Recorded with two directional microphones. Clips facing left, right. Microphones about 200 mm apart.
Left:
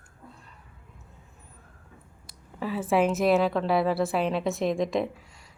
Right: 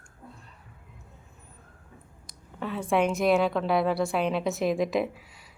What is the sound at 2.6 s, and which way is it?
A woman's voice, 5° left (ahead or behind).